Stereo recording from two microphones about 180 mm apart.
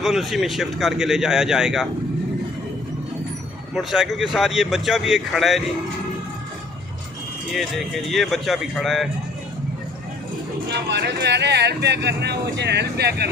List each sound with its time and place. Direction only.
0.0 s a man's voice: centre (ahead or behind)
3.8 s a man's voice: centre (ahead or behind)
7.5 s a man's voice: centre (ahead or behind)
10.7 s speech: 70° right (ahead or behind)